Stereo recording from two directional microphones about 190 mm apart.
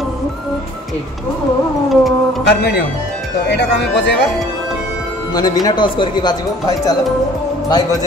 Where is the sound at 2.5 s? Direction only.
60° left (ahead or behind).